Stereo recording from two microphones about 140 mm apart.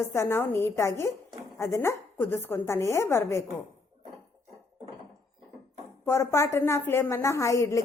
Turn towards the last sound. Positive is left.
turn(degrees=20)  # may be behind; listen again after turning